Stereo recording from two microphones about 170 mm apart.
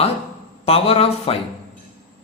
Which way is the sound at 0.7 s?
35° left (ahead or behind).